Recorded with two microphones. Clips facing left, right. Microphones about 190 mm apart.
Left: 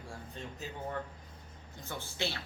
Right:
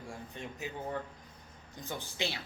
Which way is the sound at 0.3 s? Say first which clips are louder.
Right 2 dB; 15° right (ahead or behind).